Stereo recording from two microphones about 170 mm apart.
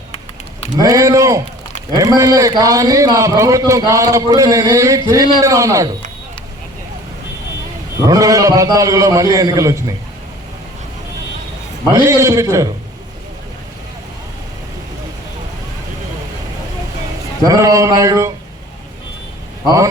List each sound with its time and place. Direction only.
0.8 s a man's voice: 20° right (ahead or behind)
7.9 s a man's voice: 20° right (ahead or behind)
12.0 s a man's voice: 20° right (ahead or behind)
17.4 s a man's voice: 20° right (ahead or behind)
19.6 s a man's voice: 20° right (ahead or behind)